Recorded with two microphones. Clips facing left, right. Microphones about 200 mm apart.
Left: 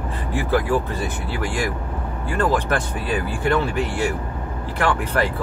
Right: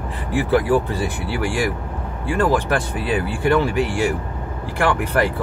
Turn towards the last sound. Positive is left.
turn(degrees=-15)  # may be behind; listen again after turning